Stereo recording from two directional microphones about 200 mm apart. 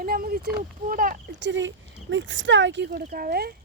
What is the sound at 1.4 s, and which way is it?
Speech, 65° right (ahead or behind).